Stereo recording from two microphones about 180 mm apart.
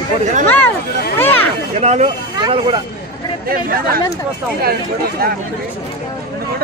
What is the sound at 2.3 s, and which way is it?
Speech, 25° right (ahead or behind).